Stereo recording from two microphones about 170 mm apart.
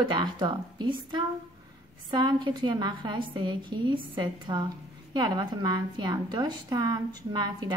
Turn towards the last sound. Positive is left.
turn(degrees=-25)  # may be behind; listen again after turning